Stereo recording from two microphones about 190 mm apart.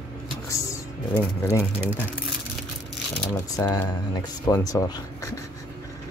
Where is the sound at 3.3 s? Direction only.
15° left (ahead or behind).